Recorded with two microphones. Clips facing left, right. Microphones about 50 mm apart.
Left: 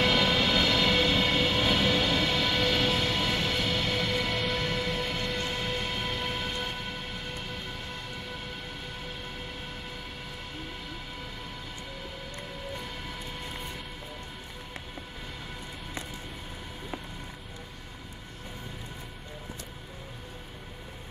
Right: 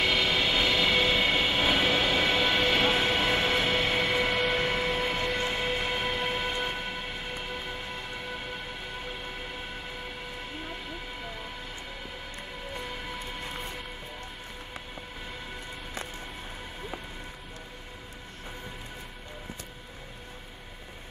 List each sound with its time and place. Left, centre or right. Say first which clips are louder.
0.0 s train: left 1 dB; centre